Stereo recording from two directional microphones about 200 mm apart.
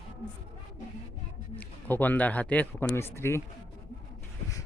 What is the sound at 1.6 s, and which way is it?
Speech, 10° left (ahead or behind).